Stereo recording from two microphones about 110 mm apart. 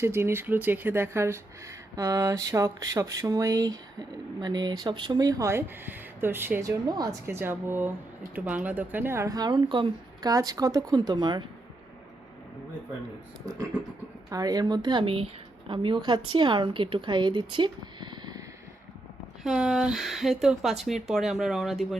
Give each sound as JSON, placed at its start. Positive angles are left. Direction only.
{"t": 0.0, "sound": "speech", "side_deg": -25}
{"t": 6.7, "sound": "speech", "side_deg": -35}
{"t": 10.2, "sound": "speech", "side_deg": -35}
{"t": 14.3, "sound": "speech", "side_deg": -35}
{"t": 15.0, "sound": "a woman's voice", "side_deg": -55}
{"t": 19.4, "sound": "speech", "side_deg": -5}